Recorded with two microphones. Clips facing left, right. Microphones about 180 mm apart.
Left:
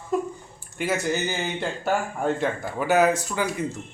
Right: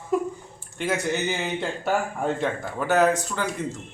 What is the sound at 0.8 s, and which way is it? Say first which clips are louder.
A man's voice: even; 5° left (ahead or behind).